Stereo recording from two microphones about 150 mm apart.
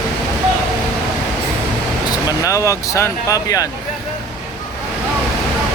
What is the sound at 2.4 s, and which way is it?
Speech, 20° left (ahead or behind).